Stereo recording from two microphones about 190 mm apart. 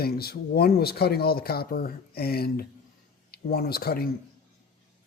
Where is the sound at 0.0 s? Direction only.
55° left (ahead or behind).